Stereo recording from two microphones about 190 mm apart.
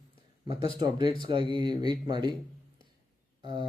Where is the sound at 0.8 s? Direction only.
25° right (ahead or behind).